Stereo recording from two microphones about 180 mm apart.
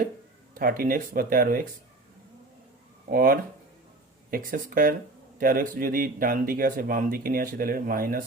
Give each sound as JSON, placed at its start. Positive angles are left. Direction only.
{"t": 0.5, "sound": "speech", "side_deg": -55}
{"t": 3.1, "sound": "speech", "side_deg": -50}